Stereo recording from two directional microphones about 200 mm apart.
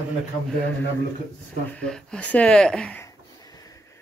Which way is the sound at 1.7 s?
5° left (ahead or behind).